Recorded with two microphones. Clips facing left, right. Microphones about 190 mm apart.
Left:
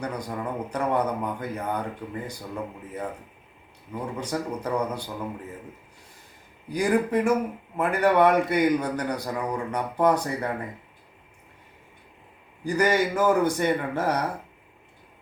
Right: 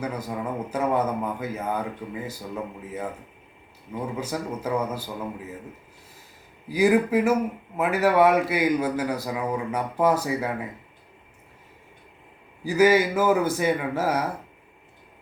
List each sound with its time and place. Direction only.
0.0 s a man's voice: 5° right (ahead or behind)
4.2 s a man's voice: 5° right (ahead or behind)
6.7 s a man's voice: 5° right (ahead or behind)
12.6 s a man's voice: 5° right (ahead or behind)